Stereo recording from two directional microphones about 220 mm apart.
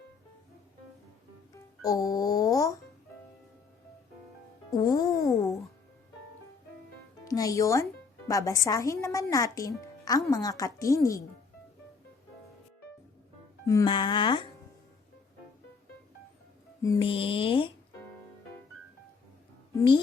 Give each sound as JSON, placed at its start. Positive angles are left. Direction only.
{"t": 1.8, "sound": "speech", "side_deg": 15}
{"t": 4.7, "sound": "speech", "side_deg": 15}
{"t": 7.3, "sound": "a child's voice", "side_deg": 15}
{"t": 13.7, "sound": "speech", "side_deg": 20}
{"t": 16.8, "sound": "speech", "side_deg": 20}
{"t": 19.7, "sound": "a woman's voice", "side_deg": 20}